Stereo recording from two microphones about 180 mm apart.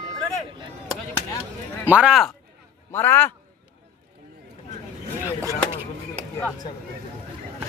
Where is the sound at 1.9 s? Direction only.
5° right (ahead or behind).